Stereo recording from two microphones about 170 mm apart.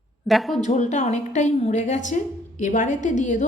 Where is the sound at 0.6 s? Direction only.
45° left (ahead or behind).